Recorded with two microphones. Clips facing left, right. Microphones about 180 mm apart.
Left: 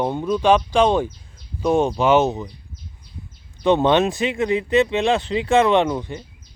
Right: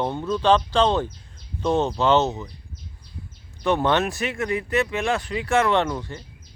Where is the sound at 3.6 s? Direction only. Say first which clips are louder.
Left 5 dB; 20° left (ahead or behind).